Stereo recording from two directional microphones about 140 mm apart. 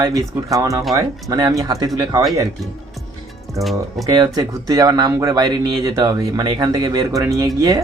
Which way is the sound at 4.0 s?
30° right (ahead or behind).